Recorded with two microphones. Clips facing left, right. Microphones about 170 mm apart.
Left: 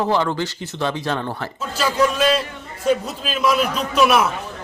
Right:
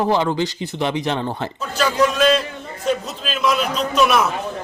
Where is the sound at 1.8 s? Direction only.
5° left (ahead or behind).